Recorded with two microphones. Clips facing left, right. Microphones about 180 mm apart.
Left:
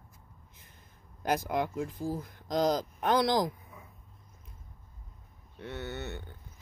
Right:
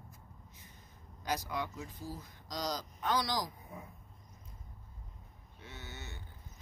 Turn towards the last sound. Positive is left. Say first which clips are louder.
# left 11 dB
turn(degrees=65)  # may be behind; listen again after turning